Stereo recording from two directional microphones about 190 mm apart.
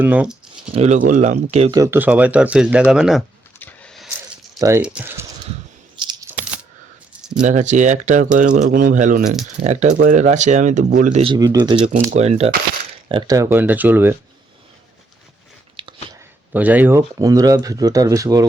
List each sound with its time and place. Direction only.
0.0 s speech: 5° right (ahead or behind)
0.7 s speech: 35° right (ahead or behind)
1.7 s speech: 15° right (ahead or behind)
3.6 s vehicle: 5° left (ahead or behind)
4.8 s speech: 5° right (ahead or behind)
6.0 s a sound: 25° right (ahead or behind)
7.4 s speech: 40° right (ahead or behind)
9.2 s speech: centre (ahead or behind)
9.6 s speech: 40° right (ahead or behind)
11.2 s speech: 25° right (ahead or behind)
12.1 s speech: 35° right (ahead or behind)
13.1 s speech: 25° right (ahead or behind)
15.7 s chewing: 25° right (ahead or behind)
16.5 s speech: 10° right (ahead or behind)